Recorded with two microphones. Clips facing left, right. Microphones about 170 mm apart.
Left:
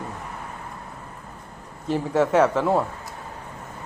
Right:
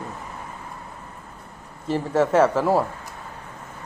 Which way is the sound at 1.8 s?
Centre (ahead or behind).